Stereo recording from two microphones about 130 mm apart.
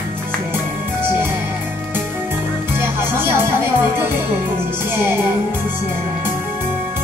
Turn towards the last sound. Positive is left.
turn(degrees=-15)  # may be behind; listen again after turning